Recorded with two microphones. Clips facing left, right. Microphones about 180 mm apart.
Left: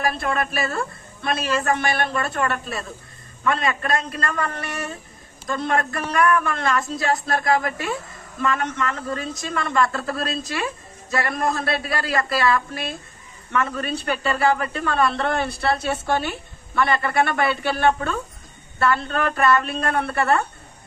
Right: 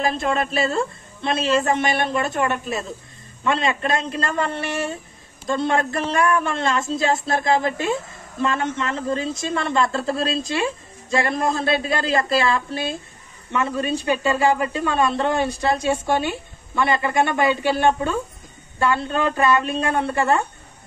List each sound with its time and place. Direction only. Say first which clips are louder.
0.0 s a man's voice: right 2 dB; 20° right (ahead or behind)